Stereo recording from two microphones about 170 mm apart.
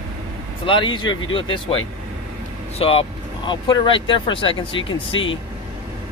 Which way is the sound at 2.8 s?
35° left (ahead or behind).